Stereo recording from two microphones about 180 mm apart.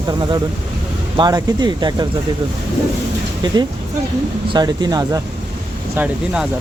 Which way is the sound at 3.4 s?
25° right (ahead or behind).